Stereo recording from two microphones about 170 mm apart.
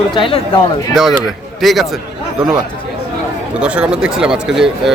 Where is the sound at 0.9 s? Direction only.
Centre (ahead or behind).